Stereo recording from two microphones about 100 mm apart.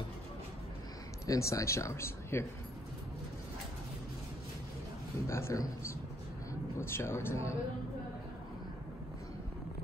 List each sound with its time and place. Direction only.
1.2 s speech: 30° left (ahead or behind)
5.2 s speech: 30° left (ahead or behind)
6.8 s speech: 25° left (ahead or behind)